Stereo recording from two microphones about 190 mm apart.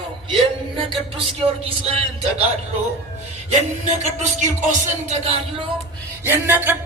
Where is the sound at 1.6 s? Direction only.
30° right (ahead or behind).